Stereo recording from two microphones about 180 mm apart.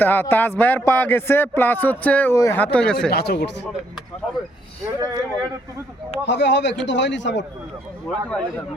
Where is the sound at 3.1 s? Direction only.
65° left (ahead or behind).